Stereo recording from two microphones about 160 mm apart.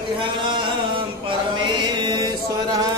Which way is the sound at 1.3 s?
30° right (ahead or behind).